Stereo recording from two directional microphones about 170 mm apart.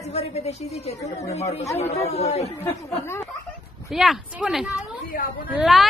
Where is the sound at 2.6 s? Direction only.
15° left (ahead or behind).